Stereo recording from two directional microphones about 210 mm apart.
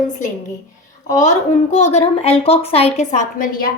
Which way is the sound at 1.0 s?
35° left (ahead or behind).